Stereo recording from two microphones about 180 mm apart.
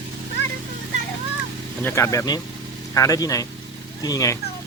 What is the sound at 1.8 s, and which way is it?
A man's voice, 15° left (ahead or behind).